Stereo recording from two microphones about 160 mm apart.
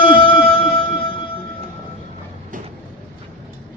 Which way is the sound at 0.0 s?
30° left (ahead or behind).